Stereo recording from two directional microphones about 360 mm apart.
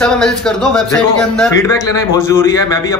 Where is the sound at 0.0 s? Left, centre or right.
Centre.